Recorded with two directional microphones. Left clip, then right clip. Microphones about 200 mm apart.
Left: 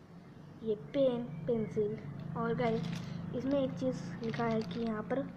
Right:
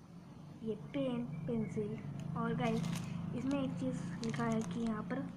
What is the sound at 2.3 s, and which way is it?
Speech, 15° left (ahead or behind).